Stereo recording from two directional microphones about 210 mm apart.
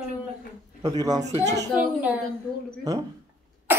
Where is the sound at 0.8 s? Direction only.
15° right (ahead or behind).